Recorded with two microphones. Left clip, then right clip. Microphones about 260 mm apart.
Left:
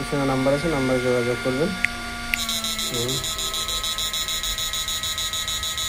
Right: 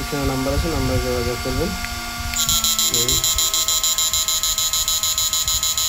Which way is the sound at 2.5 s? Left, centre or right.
Centre.